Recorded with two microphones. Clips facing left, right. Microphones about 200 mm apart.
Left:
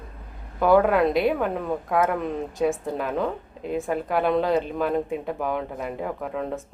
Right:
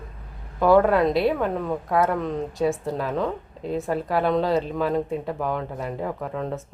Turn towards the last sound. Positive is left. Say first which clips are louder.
# even
turn(degrees=5)  # may be behind; listen again after turning